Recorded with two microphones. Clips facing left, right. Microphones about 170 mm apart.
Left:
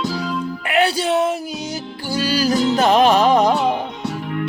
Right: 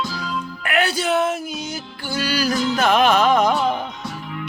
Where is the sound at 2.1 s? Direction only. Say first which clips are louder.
Left 3 dB; 35° left (ahead or behind).